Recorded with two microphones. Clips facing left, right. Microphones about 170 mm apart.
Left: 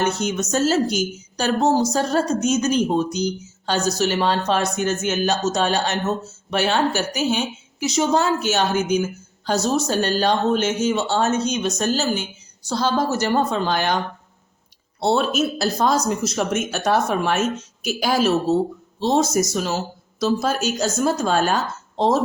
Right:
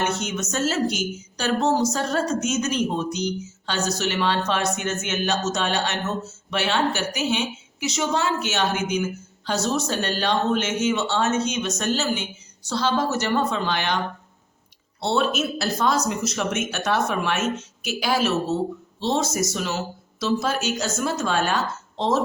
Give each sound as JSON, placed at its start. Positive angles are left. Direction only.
{"t": 0.0, "sound": "a woman's voice", "side_deg": 35}
{"t": 15.0, "sound": "a woman's voice", "side_deg": 40}